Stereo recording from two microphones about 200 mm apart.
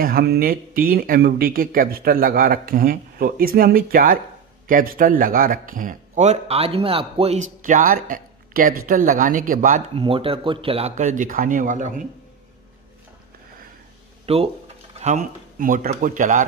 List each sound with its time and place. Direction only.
0.0 s speech: 50° right (ahead or behind); by 7.3 s 30° right (ahead or behind)
7.6 s speech: 40° right (ahead or behind)
9.9 s speech: 25° right (ahead or behind)
14.2 s speech: 30° right (ahead or behind)